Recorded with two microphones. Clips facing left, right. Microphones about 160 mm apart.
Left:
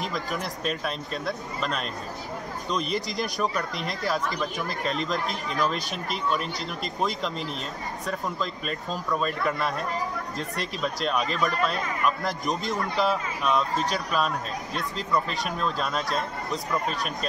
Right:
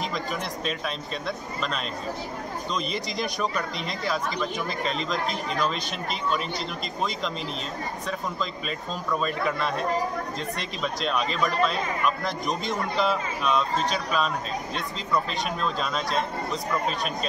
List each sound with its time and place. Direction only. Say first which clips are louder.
0.0 s speech: even; centre (ahead or behind)
3.7 s speech: left 1 dB; 50° left (ahead or behind)
5.1 s speech: right 1 dB; centre (ahead or behind)
8.1 s speech: left 2 dB; centre (ahead or behind)